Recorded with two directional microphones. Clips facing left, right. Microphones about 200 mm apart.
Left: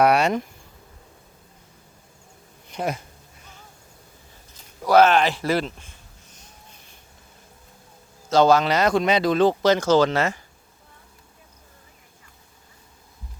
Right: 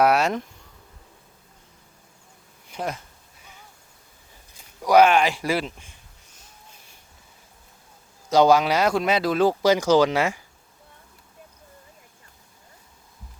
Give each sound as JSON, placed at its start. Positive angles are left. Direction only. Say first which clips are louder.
{"t": 0.0, "sound": "speech", "louder": "left 1 dB", "side_deg": 0}
{"t": 2.7, "sound": "speech", "louder": "left 3 dB", "side_deg": -5}
{"t": 4.9, "sound": "speech", "louder": "even", "side_deg": -10}
{"t": 8.3, "sound": "speech", "louder": "even", "side_deg": -15}